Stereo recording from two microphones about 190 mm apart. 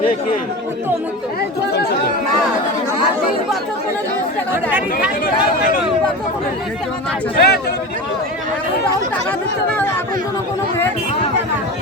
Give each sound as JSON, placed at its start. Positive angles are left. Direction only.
{"t": 1.7, "sound": "chatter", "side_deg": 55}
{"t": 4.5, "sound": "speech", "side_deg": -10}
{"t": 5.2, "sound": "speech", "side_deg": 45}
{"t": 7.3, "sound": "speech", "side_deg": 55}